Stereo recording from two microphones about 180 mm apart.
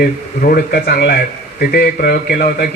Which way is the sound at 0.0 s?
60° left (ahead or behind).